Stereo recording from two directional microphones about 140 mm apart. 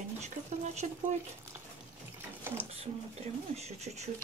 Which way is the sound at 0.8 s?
55° right (ahead or behind).